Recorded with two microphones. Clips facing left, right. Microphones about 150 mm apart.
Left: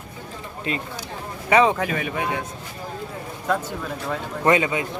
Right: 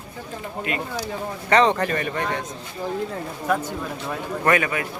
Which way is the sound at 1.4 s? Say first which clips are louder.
Even; 10° left (ahead or behind).